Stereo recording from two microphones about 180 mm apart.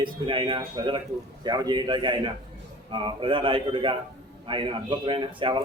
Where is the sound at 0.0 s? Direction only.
30° right (ahead or behind).